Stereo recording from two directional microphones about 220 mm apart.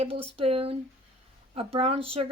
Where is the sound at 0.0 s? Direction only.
25° right (ahead or behind).